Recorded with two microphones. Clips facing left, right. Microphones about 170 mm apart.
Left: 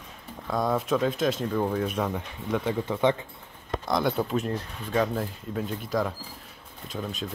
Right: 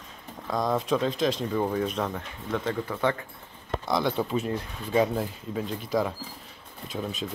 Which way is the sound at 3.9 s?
Centre (ahead or behind).